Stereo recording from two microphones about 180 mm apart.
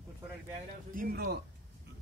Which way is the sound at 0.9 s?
60° right (ahead or behind).